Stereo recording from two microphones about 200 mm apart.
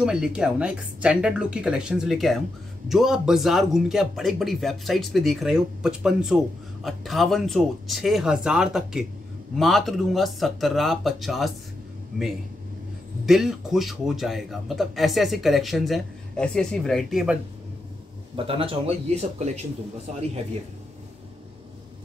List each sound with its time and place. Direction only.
0.0 s speech: 5° right (ahead or behind)
13.2 s speech: centre (ahead or behind)
18.3 s speech: 25° right (ahead or behind)